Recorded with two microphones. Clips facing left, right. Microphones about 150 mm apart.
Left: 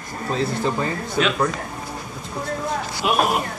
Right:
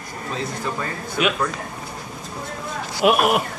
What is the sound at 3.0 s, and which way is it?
Speech, 60° right (ahead or behind).